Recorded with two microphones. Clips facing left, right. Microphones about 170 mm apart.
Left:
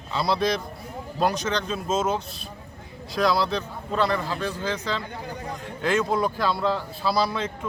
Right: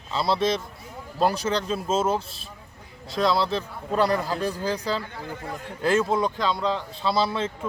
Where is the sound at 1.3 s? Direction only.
30° right (ahead or behind).